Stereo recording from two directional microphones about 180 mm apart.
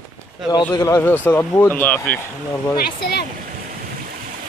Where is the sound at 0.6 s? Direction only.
15° left (ahead or behind).